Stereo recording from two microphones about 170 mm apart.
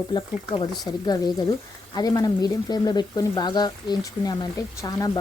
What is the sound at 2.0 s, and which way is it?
Speech, 20° left (ahead or behind).